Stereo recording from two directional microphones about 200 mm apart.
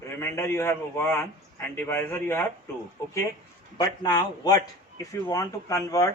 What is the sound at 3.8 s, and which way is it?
A man's voice, 20° left (ahead or behind).